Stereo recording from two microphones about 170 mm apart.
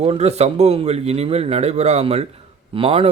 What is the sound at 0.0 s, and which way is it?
A man's voice, 40° right (ahead or behind).